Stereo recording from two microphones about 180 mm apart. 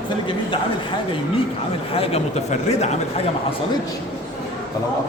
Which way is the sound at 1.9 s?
35° left (ahead or behind).